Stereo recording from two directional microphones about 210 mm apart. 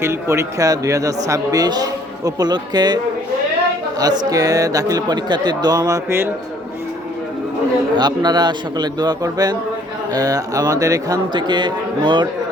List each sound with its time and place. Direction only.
0.0 s speech: 10° right (ahead or behind)
7.9 s speech: 20° right (ahead or behind)